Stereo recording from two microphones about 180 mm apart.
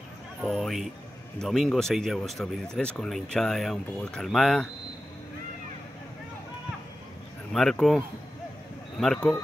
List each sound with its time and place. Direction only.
0.4 s speech: centre (ahead or behind)
7.5 s speech: 5° left (ahead or behind)
9.0 s speech: centre (ahead or behind)